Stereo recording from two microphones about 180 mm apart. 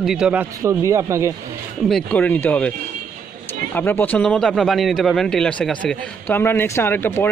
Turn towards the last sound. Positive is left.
turn(degrees=15)  # may be behind; listen again after turning